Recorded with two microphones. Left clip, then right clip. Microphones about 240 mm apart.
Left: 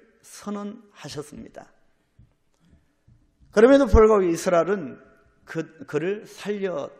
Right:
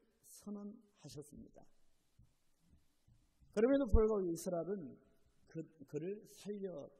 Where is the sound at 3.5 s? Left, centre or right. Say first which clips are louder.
Left 19 dB; left.